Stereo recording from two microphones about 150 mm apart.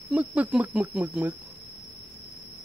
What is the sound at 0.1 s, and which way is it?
Speech, 10° right (ahead or behind).